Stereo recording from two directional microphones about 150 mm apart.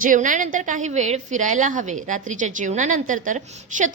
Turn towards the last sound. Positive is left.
turn(degrees=-55)  # may be behind; listen again after turning